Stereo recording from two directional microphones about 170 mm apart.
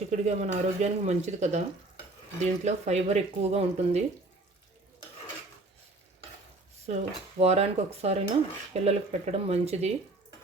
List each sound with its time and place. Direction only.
0.1 s speech: 40° right (ahead or behind)
6.8 s speech: 40° right (ahead or behind)